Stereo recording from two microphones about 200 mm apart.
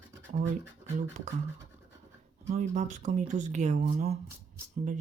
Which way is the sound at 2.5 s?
40° right (ahead or behind).